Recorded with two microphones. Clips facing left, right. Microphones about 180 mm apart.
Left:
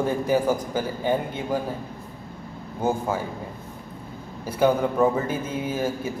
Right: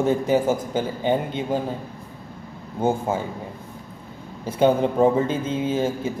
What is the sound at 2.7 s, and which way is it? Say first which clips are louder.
Speech: right 2 dB; 25° right (ahead or behind).